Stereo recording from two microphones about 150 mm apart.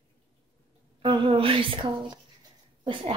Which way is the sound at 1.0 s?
35° right (ahead or behind).